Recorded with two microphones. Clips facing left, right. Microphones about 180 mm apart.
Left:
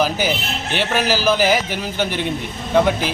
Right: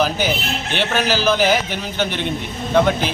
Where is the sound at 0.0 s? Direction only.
5° left (ahead or behind).